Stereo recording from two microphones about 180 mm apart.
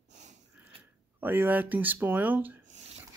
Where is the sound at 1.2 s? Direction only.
10° right (ahead or behind).